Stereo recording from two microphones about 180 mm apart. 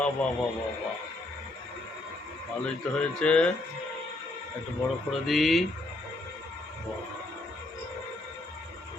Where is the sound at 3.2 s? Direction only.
5° left (ahead or behind).